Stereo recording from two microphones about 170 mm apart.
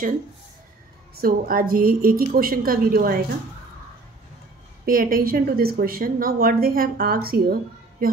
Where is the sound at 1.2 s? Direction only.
60° right (ahead or behind).